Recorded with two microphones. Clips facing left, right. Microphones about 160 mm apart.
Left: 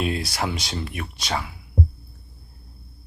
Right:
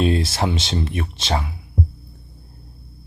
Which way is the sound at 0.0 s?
25° right (ahead or behind).